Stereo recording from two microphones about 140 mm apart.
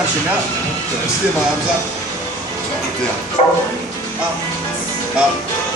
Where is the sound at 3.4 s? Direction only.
50° left (ahead or behind).